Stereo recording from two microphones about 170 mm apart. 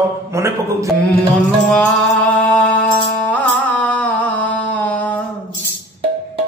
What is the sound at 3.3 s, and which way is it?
Music, 10° left (ahead or behind).